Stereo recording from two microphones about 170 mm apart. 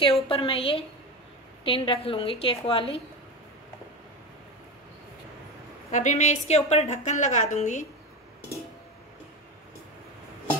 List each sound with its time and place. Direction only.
0.0 s a woman's voice: 30° left (ahead or behind)
5.9 s a woman's voice: 45° left (ahead or behind)